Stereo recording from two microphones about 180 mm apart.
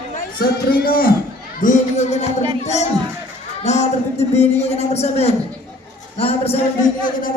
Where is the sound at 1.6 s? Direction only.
40° left (ahead or behind).